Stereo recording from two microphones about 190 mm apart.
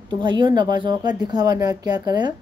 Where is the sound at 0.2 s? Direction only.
25° right (ahead or behind).